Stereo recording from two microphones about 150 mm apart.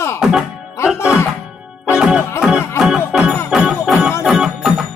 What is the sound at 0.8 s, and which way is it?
Speech, 20° left (ahead or behind).